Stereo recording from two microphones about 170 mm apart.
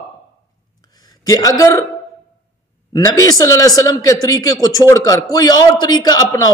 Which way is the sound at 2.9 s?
20° left (ahead or behind).